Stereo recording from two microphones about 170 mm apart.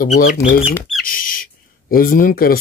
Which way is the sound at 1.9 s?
55° left (ahead or behind).